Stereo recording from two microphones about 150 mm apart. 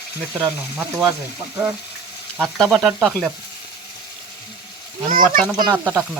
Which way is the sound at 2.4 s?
Centre (ahead or behind).